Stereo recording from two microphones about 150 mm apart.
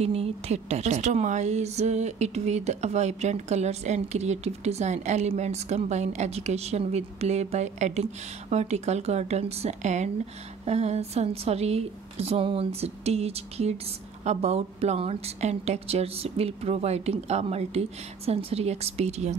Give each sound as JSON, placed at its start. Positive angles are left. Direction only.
{"t": 0.0, "sound": "a woman's voice", "side_deg": -45}